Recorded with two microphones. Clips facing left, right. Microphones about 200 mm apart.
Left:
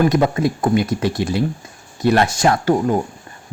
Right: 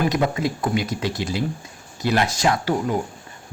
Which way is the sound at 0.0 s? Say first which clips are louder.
Left 5 dB; 50° left (ahead or behind).